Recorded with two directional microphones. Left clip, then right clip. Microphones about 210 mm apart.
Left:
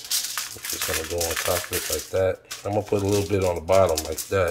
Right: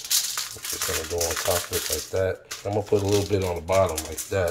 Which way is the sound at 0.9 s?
20° left (ahead or behind).